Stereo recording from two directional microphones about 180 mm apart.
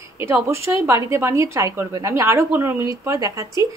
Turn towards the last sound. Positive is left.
turn(degrees=-20)  # may be behind; listen again after turning